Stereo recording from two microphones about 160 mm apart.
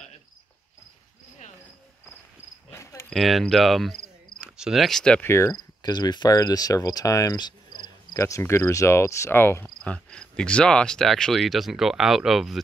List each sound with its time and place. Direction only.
2.7 s cricket: 20° left (ahead or behind)
3.1 s speech: centre (ahead or behind)
4.4 s cricket: 5° right (ahead or behind)